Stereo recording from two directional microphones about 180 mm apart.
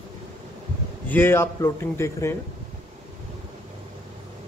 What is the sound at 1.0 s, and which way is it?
A man's voice, 10° left (ahead or behind).